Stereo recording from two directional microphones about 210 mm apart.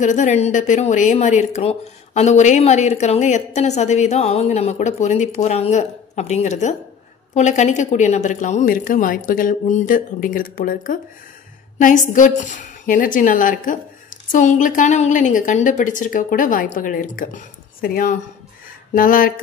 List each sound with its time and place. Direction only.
0.0 s a woman's voice: 35° left (ahead or behind)
12.1 s a woman's voice: 35° left (ahead or behind)